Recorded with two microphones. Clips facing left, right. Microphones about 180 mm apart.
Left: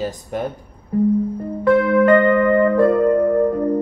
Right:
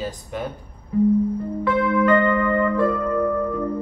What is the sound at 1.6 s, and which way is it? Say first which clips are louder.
Music: left 6 dB; 50° left (ahead or behind).